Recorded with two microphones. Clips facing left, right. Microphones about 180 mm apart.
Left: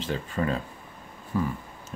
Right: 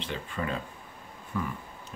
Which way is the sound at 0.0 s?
40° left (ahead or behind).